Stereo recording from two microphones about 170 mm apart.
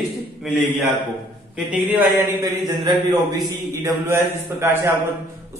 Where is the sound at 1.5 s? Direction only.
10° right (ahead or behind).